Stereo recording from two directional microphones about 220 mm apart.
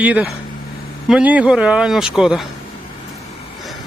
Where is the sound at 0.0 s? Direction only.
5° right (ahead or behind).